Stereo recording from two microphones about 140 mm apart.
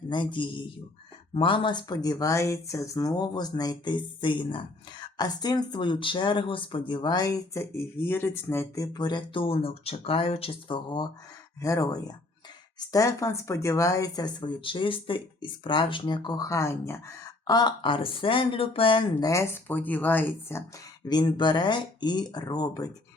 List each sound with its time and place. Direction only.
0.1 s speech: 35° left (ahead or behind)
19.3 s speech: 15° left (ahead or behind)
21.1 s speech: 30° left (ahead or behind)